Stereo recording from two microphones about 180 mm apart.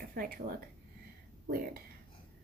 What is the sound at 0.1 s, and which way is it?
Speech, 55° right (ahead or behind).